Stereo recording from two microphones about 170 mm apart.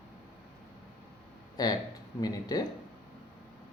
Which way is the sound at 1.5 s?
25° left (ahead or behind).